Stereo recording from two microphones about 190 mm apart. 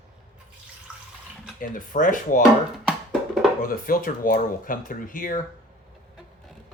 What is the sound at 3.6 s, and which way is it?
Speech, 45° left (ahead or behind).